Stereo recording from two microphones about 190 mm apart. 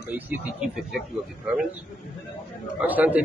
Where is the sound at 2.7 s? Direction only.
10° right (ahead or behind).